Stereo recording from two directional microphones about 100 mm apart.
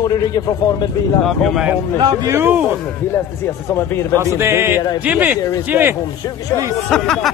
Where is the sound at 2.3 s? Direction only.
25° right (ahead or behind).